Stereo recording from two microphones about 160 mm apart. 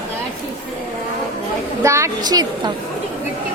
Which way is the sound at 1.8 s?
20° right (ahead or behind).